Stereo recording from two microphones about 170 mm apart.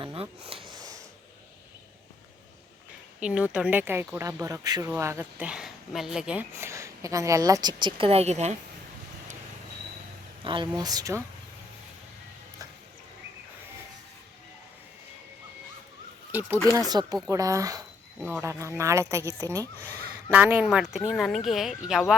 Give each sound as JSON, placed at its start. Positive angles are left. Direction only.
{"t": 0.0, "sound": "a sound", "side_deg": -30}
{"t": 3.2, "sound": "speech", "side_deg": -5}
{"t": 6.5, "sound": "speech", "side_deg": -15}
{"t": 10.4, "sound": "speech", "side_deg": -30}
{"t": 16.3, "sound": "speech", "side_deg": -10}
{"t": 16.7, "sound": "speech", "side_deg": -25}